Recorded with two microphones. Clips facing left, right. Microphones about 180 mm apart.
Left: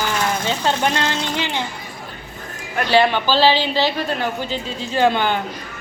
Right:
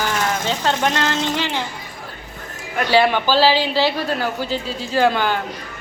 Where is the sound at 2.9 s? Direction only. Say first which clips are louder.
Even; 10° right (ahead or behind).